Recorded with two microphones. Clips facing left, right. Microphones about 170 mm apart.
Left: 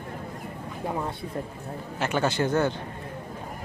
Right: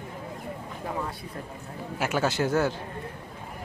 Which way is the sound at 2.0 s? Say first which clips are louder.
Left 1 dB; 5° right (ahead or behind).